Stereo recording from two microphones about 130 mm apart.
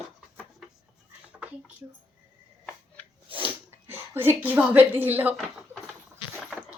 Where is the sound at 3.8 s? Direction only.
15° right (ahead or behind).